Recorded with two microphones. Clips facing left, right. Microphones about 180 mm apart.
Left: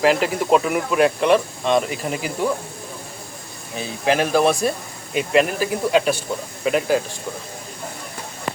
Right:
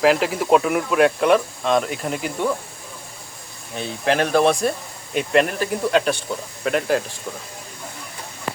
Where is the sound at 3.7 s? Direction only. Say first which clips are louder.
Left 1 dB; 5° left (ahead or behind).